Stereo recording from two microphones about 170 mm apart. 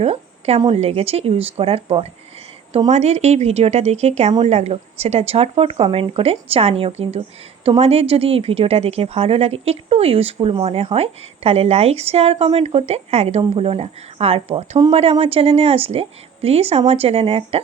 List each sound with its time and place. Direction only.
0.0 s a woman's voice: 40° right (ahead or behind)